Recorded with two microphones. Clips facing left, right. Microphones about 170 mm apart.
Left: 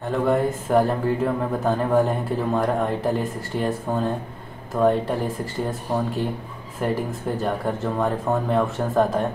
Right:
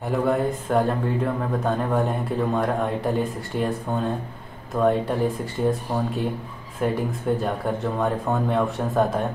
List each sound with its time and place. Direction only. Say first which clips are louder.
0.3 s speech: left 4 dB; centre (ahead or behind)